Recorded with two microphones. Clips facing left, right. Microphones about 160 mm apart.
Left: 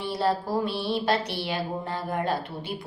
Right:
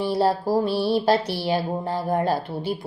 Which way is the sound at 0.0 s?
40° right (ahead or behind).